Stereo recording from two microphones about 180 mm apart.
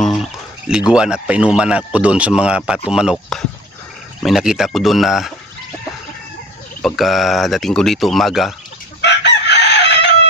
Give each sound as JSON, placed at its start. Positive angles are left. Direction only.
{"t": 0.0, "sound": "a man's voice", "side_deg": 0}
{"t": 6.8, "sound": "a man's voice", "side_deg": 0}
{"t": 9.0, "sound": "chicken", "side_deg": 70}